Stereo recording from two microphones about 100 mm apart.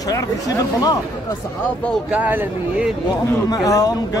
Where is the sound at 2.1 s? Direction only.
15° right (ahead or behind).